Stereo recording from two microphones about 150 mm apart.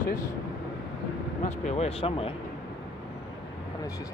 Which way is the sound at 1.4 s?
50° left (ahead or behind).